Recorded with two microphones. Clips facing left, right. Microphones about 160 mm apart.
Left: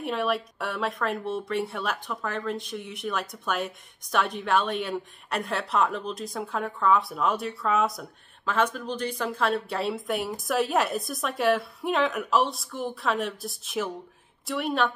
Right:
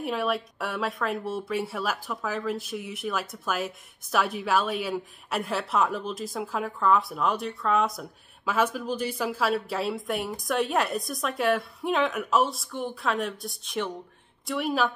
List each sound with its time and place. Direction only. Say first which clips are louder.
0.0 s speech: even; centre (ahead or behind)